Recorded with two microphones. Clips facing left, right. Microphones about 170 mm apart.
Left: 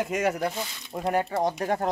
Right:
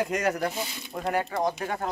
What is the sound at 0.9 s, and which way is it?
Speech, 25° left (ahead or behind).